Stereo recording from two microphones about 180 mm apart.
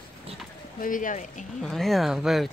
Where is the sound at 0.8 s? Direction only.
45° left (ahead or behind).